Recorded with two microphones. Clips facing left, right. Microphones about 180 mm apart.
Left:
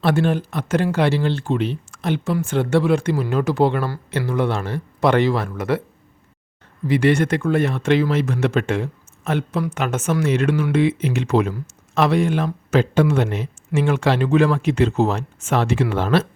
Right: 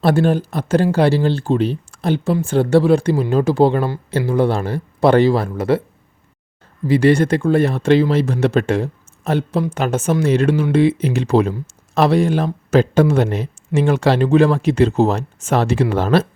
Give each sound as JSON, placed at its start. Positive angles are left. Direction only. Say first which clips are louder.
{"t": 0.0, "sound": "speech", "louder": "right 4 dB", "side_deg": -35}
{"t": 6.8, "sound": "speech", "louder": "right 4 dB", "side_deg": -35}